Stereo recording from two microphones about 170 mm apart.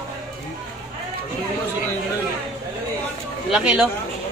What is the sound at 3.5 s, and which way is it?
Speech, 5° right (ahead or behind).